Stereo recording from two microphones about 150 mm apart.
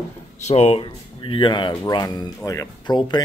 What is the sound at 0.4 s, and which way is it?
Speech, 45° left (ahead or behind).